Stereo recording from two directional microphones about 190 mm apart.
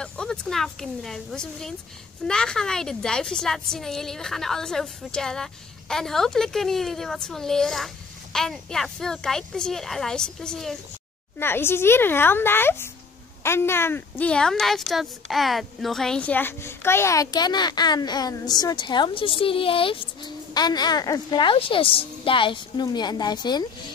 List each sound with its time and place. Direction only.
0.0 s a woman's voice: 5° left (ahead or behind); by 23.7 s 20° left (ahead or behind)